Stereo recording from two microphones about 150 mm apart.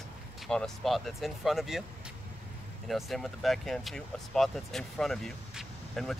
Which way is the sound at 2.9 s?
Centre (ahead or behind).